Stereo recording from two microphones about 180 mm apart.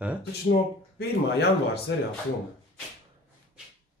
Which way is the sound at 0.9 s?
65° left (ahead or behind).